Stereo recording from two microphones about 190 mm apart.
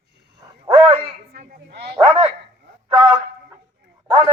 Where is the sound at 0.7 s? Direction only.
30° right (ahead or behind).